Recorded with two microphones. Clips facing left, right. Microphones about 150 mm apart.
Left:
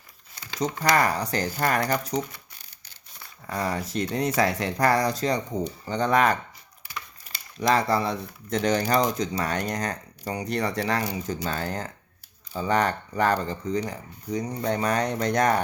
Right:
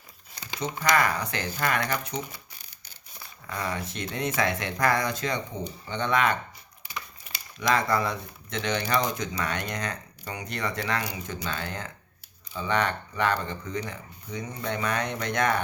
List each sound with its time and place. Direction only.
0.6 s speech: 40° left (ahead or behind)
3.4 s speech: 40° left (ahead or behind)
7.7 s speech: 35° left (ahead or behind)